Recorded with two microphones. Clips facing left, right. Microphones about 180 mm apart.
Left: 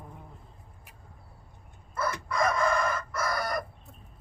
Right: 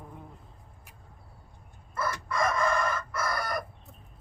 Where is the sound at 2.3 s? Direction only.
Centre (ahead or behind).